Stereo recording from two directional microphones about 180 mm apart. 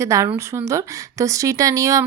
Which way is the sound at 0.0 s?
15° right (ahead or behind).